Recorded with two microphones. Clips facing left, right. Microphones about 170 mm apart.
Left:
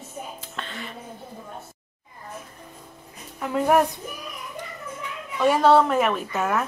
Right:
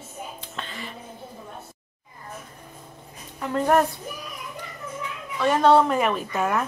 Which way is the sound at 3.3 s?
5° left (ahead or behind).